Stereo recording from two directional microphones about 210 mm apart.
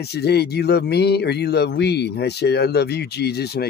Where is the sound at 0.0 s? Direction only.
50° left (ahead or behind).